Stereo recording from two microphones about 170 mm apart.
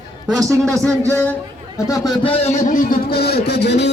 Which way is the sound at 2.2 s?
35° left (ahead or behind).